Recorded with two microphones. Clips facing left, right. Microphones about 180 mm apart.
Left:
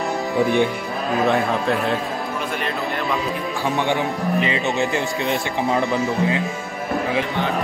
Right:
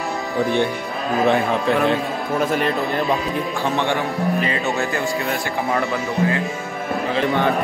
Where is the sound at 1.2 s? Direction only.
Centre (ahead or behind).